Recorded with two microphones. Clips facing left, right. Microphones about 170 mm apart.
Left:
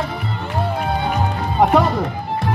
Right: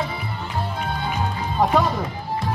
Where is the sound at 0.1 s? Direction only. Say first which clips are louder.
Left 4 dB; 70° left (ahead or behind).